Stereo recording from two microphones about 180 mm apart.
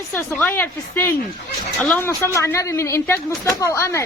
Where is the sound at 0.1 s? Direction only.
10° left (ahead or behind).